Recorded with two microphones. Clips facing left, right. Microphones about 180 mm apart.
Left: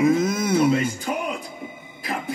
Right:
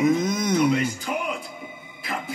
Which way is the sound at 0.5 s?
30° left (ahead or behind).